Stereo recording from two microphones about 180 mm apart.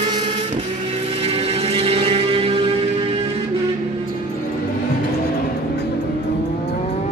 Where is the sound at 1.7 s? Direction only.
35° right (ahead or behind).